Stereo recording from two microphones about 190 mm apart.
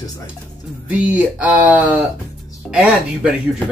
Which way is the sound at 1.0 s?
5° right (ahead or behind).